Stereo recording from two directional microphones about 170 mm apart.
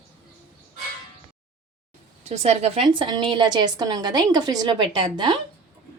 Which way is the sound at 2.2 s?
40° right (ahead or behind).